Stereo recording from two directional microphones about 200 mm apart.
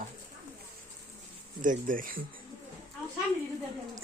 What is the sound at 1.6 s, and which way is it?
Speech, 40° right (ahead or behind).